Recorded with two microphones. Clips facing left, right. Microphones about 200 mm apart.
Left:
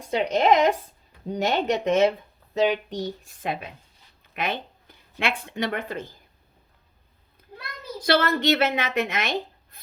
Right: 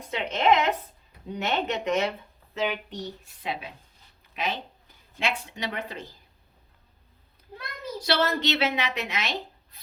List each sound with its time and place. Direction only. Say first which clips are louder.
0.1 s a woman's voice: left 3 dB; 35° left (ahead or behind)
8.0 s a woman's voice: left 4 dB; 50° left (ahead or behind)
9.7 s rub: left 3 dB; 50° left (ahead or behind)